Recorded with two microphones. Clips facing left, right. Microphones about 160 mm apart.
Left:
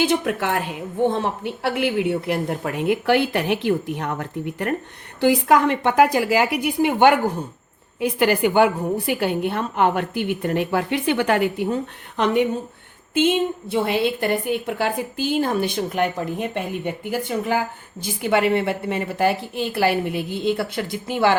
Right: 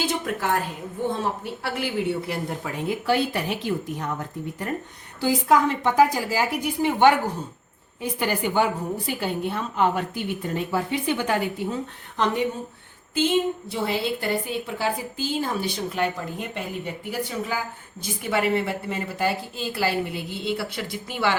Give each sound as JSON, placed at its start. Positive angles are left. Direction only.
{"t": 0.0, "sound": "a woman's voice", "side_deg": 65}
{"t": 7.9, "sound": "a woman's voice", "side_deg": 75}